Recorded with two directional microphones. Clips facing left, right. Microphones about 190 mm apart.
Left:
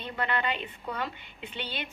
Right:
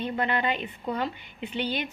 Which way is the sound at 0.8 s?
35° right (ahead or behind).